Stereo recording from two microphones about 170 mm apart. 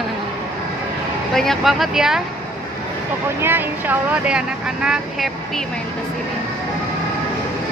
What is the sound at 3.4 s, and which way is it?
Speech, 10° right (ahead or behind).